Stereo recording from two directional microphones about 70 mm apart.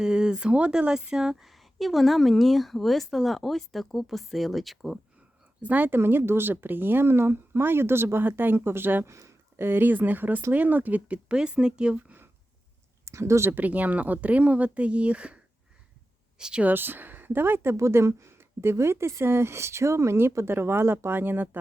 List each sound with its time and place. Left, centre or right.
0.0 s speech: centre
5.6 s speech: right
9.0 s speech: right
9.6 s speech: right; by 12.1 s centre
13.1 s speech: right
13.5 s speech: right
16.4 s speech: centre
16.6 s speech: right
17.7 s speech: right